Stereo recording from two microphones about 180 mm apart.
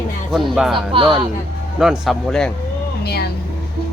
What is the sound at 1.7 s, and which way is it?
Speech, 5° right (ahead or behind).